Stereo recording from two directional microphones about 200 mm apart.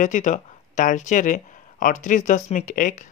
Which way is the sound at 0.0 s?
40° left (ahead or behind).